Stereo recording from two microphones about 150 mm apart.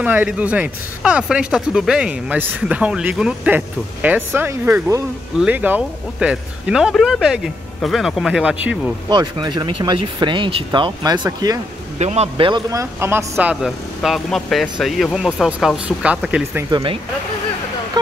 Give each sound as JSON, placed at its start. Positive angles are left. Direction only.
{"t": 0.0, "sound": "speech", "side_deg": -10}
{"t": 9.1, "sound": "speech", "side_deg": -30}
{"t": 12.0, "sound": "a man's voice", "side_deg": -45}
{"t": 12.4, "sound": "speech", "side_deg": -25}
{"t": 16.7, "sound": "speech", "side_deg": -35}